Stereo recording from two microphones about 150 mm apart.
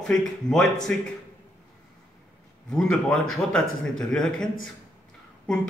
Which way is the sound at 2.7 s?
5° left (ahead or behind).